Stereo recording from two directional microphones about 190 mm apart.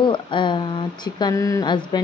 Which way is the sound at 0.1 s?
25° left (ahead or behind).